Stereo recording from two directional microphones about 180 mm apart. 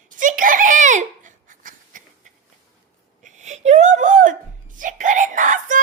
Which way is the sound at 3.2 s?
40° right (ahead or behind).